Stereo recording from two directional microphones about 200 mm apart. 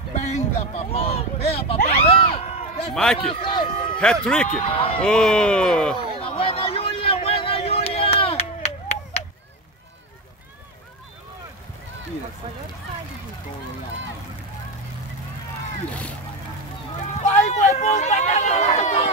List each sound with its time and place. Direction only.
0.1 s a sound: 35° left (ahead or behind)
2.9 s speech: 5° left (ahead or behind)
3.2 s a man's voice: 25° left (ahead or behind)
4.0 s speech: 5° left (ahead or behind)
4.5 s speech: 30° left (ahead or behind)
5.0 s speech: 5° left (ahead or behind)
5.9 s a sound: 25° left (ahead or behind)
15.9 s speech: 5° left (ahead or behind)
17.2 s run: 35° left (ahead or behind)